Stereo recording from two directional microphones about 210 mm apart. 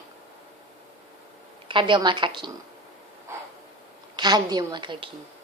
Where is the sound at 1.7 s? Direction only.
25° right (ahead or behind).